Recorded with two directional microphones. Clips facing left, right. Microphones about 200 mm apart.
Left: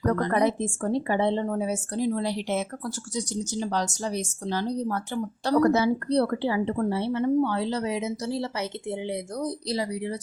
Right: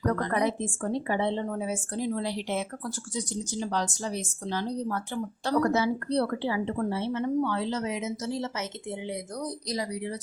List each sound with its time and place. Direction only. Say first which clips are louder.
0.2 s a woman's voice: left 4 dB; 35° left (ahead or behind)